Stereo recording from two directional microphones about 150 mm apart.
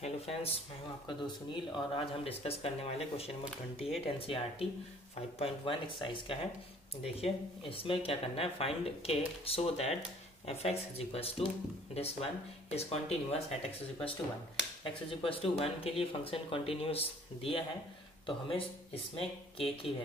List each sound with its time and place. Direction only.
0.0 s speech: 40° left (ahead or behind)
15.0 s speech: 35° left (ahead or behind)